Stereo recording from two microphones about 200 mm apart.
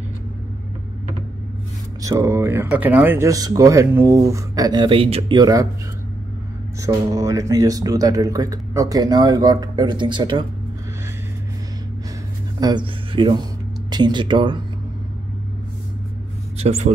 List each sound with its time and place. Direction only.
2.0 s speech: 15° right (ahead or behind)
6.8 s speech: 15° right (ahead or behind)
12.5 s speech: 20° right (ahead or behind)
16.5 s a man's voice: 30° right (ahead or behind)